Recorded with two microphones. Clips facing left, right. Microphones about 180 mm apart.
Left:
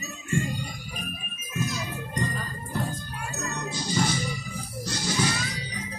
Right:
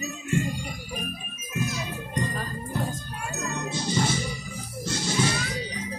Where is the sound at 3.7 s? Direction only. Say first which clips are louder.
Even; 25° right (ahead or behind).